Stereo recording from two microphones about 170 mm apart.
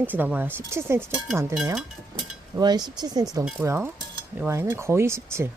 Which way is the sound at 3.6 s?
15° right (ahead or behind).